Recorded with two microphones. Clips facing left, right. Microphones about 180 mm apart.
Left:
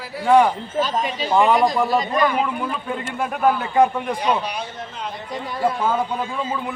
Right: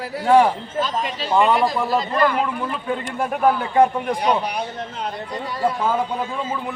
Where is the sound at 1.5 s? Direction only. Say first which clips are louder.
Left 2 dB; 15° left (ahead or behind).